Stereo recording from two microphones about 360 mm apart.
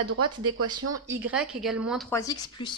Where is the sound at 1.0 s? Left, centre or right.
Centre.